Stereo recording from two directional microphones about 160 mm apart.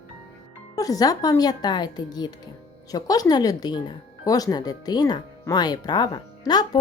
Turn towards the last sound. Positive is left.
turn(degrees=25)  # may be behind; listen again after turning